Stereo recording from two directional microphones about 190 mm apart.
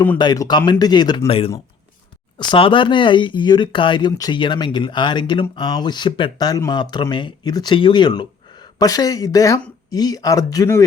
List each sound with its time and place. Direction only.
0.2 s speech: 20° left (ahead or behind)